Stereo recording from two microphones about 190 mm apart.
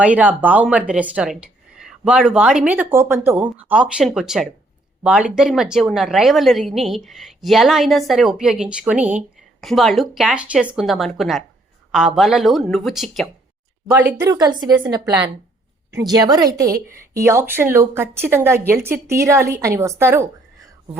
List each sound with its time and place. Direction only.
0.0 s a woman's voice: 10° right (ahead or behind)
14.2 s speech: 20° right (ahead or behind)